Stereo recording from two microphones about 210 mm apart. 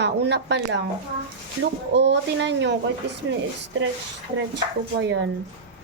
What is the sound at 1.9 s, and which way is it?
Speech, 55° right (ahead or behind).